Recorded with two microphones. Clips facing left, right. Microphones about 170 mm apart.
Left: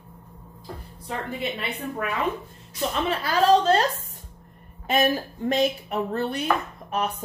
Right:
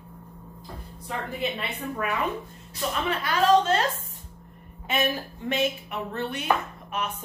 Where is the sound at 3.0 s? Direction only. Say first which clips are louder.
Left 2 dB; 35° left (ahead or behind).